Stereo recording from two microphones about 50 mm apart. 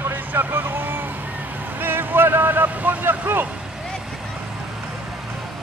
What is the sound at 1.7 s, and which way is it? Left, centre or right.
Vehicle, right.